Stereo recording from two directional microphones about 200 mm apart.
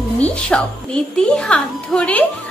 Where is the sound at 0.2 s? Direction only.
5° left (ahead or behind).